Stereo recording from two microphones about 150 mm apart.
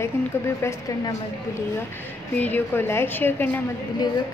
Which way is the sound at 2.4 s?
10° left (ahead or behind).